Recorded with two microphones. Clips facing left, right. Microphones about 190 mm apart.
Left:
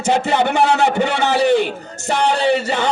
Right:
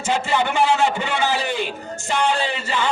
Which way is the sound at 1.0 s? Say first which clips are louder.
Left 4 dB; 70° left (ahead or behind).